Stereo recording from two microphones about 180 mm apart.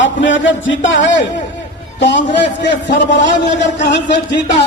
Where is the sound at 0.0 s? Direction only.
90° left.